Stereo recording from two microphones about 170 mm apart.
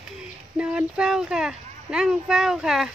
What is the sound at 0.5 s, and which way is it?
Speech, 5° right (ahead or behind).